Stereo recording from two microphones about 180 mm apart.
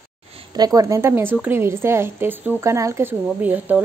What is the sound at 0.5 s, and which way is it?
A woman's voice, 20° right (ahead or behind).